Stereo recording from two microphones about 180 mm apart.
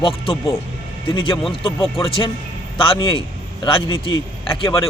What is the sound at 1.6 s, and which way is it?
A man's voice, 30° left (ahead or behind).